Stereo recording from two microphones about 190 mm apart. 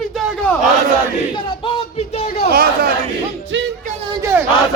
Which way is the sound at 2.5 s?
50° right (ahead or behind).